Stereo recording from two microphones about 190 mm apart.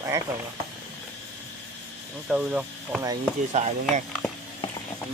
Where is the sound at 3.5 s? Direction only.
35° right (ahead or behind).